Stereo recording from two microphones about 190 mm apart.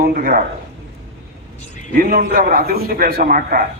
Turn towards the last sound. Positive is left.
turn(degrees=-50)  # may be behind; listen again after turning